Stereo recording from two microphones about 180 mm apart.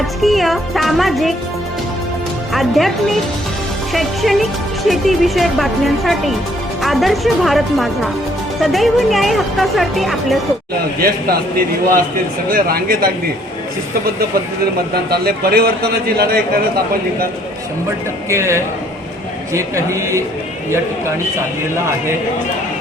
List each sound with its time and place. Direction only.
0.0 s speech: centre (ahead or behind)
2.5 s speech: centre (ahead or behind)
11.0 s a man's voice: 55° right (ahead or behind)
15.1 s a man's voice: 60° right (ahead or behind)
18.3 s speech: 15° right (ahead or behind)